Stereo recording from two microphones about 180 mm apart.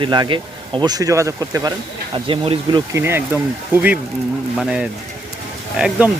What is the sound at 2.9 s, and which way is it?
Speech, 15° right (ahead or behind).